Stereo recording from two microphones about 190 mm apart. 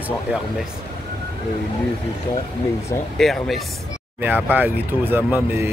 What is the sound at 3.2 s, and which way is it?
Speech, centre (ahead or behind).